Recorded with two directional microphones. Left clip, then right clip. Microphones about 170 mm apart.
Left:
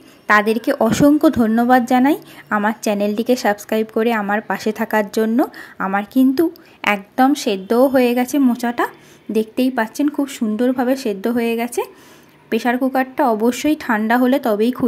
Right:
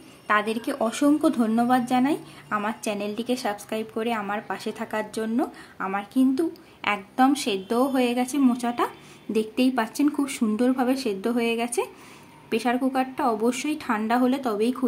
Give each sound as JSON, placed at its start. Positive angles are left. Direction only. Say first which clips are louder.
{"t": 0.3, "sound": "a woman's voice", "louder": "left 9 dB", "side_deg": 30}